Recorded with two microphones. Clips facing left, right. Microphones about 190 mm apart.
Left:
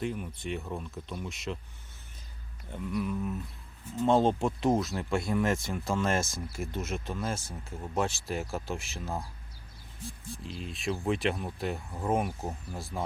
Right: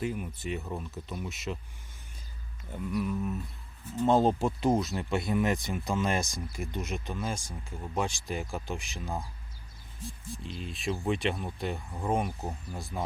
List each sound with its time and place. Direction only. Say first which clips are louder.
0.0 s speech: right 1 dB; 5° right (ahead or behind)
2.7 s speech: right 1 dB; centre (ahead or behind)
10.4 s speech: even; centre (ahead or behind)